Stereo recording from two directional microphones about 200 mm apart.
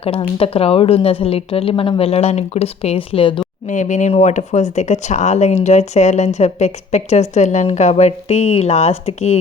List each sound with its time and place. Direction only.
0.0 s a woman's voice: 30° left (ahead or behind)
3.7 s speech: 35° left (ahead or behind)